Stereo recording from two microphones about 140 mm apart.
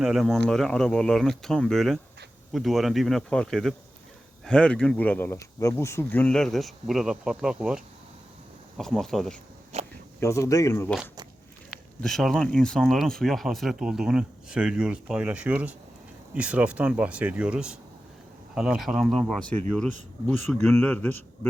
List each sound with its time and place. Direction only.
0.0 s speech: centre (ahead or behind)
8.8 s speech: centre (ahead or behind)
9.7 s a sound: 55° right (ahead or behind)
10.2 s speech: 20° left (ahead or behind)
11.7 s speech: centre (ahead or behind)